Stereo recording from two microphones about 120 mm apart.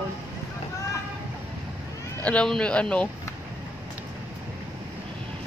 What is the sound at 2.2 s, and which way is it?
Speech, 10° left (ahead or behind).